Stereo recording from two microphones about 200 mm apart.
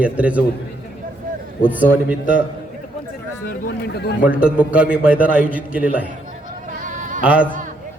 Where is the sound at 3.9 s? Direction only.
50° left (ahead or behind).